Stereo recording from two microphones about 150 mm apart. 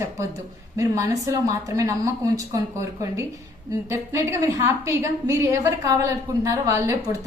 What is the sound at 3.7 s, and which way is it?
A woman's voice, 20° right (ahead or behind).